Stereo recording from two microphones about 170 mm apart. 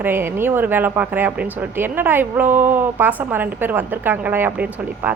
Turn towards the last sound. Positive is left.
turn(degrees=-10)  # may be behind; listen again after turning